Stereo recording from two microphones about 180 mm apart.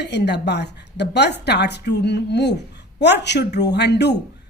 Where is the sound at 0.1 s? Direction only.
70° left (ahead or behind).